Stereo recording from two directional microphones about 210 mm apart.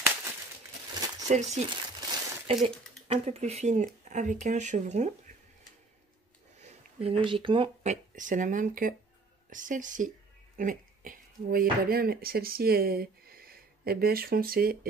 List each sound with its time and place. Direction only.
1.2 s speech: 35° right (ahead or behind)
6.6 s a sound: 30° right (ahead or behind)
7.2 s speech: 25° right (ahead or behind); by 14.9 s 45° right (ahead or behind)